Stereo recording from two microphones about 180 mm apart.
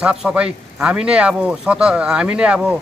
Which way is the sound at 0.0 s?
5° right (ahead or behind).